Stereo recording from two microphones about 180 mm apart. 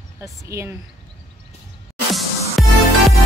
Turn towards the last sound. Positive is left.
turn(degrees=0)  # may be behind; listen again after turning